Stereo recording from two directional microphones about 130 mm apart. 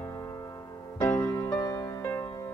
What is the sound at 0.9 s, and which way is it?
Music, 30° left (ahead or behind).